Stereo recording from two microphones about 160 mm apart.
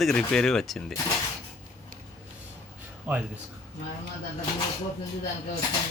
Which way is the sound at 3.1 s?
10° right (ahead or behind).